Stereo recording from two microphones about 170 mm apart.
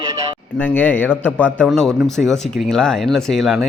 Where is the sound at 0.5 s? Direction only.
10° left (ahead or behind).